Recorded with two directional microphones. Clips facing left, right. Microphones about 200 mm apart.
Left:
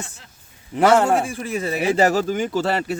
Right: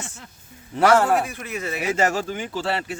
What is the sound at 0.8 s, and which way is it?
Speech, 20° left (ahead or behind).